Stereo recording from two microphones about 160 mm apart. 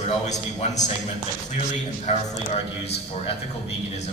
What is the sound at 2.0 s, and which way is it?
A man's voice, 45° left (ahead or behind).